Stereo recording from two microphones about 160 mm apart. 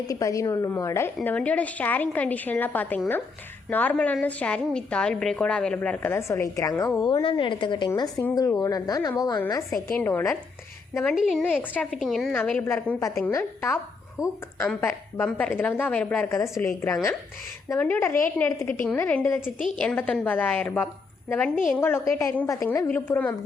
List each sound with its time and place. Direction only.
0.1 s a woman's voice: 20° left (ahead or behind)
10.0 s a woman's voice: 15° left (ahead or behind)
11.1 s a woman's voice: centre (ahead or behind); by 13.7 s 15° left (ahead or behind)
14.2 s a woman's voice: 5° right (ahead or behind)
14.7 s a woman's voice: 10° left (ahead or behind)